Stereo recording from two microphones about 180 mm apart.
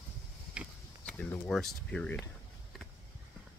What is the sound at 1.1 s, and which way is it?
Speech, 5° left (ahead or behind).